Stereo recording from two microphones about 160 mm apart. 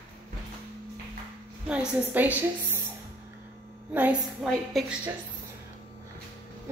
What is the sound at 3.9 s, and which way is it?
Speech, 10° right (ahead or behind).